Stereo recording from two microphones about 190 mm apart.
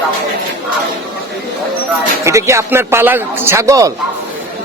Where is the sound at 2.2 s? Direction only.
15° right (ahead or behind).